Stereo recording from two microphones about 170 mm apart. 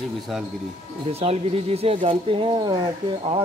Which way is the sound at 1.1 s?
35° right (ahead or behind).